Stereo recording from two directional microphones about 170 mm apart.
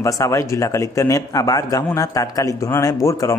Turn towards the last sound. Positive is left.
turn(degrees=15)  # may be behind; listen again after turning